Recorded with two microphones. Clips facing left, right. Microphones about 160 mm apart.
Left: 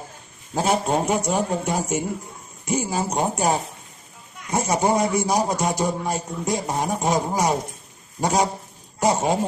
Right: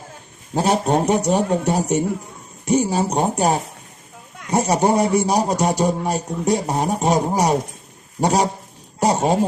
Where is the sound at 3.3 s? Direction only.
55° right (ahead or behind).